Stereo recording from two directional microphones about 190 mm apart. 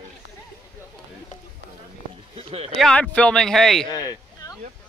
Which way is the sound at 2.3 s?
30° right (ahead or behind).